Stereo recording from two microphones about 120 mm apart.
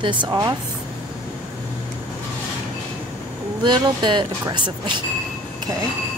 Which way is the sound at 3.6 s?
40° right (ahead or behind).